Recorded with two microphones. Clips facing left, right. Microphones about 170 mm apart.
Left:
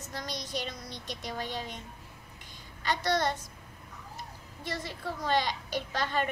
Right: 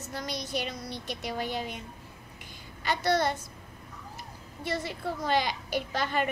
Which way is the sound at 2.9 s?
5° right (ahead or behind).